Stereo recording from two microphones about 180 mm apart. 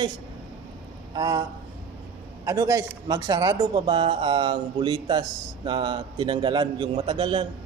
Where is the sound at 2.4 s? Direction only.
20° right (ahead or behind).